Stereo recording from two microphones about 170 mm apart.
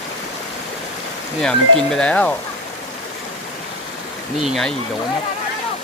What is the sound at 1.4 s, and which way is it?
Speech, 5° left (ahead or behind).